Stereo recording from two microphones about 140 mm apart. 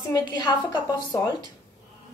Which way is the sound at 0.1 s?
30° left (ahead or behind).